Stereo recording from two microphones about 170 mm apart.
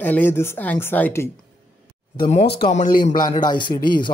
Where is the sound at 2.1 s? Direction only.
40° left (ahead or behind).